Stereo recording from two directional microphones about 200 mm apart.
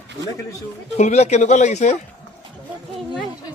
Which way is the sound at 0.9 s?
35° left (ahead or behind).